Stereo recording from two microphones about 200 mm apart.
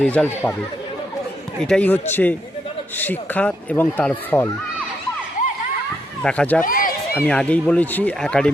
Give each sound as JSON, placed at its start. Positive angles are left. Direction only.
{"t": 0.0, "sound": "speech", "side_deg": 5}
{"t": 1.6, "sound": "speech", "side_deg": 5}
{"t": 3.0, "sound": "speech", "side_deg": 10}
{"t": 6.2, "sound": "speech", "side_deg": 5}
{"t": 6.7, "sound": "run", "side_deg": 45}
{"t": 7.3, "sound": "speech", "side_deg": 5}